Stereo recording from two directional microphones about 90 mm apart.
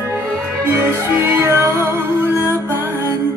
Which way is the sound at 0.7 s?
25° right (ahead or behind).